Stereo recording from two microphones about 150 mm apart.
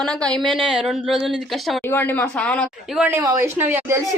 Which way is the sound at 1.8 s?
15° left (ahead or behind).